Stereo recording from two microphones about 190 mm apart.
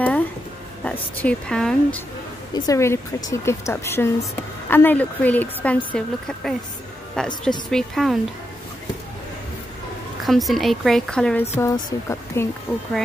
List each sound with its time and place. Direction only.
0.0 s a sound: 5° left (ahead or behind)
0.8 s speech: 5° left (ahead or behind)
2.5 s speech: 20° left (ahead or behind); by 8.2 s centre (ahead or behind)
10.2 s speech: centre (ahead or behind)
11.5 s speech: 15° left (ahead or behind)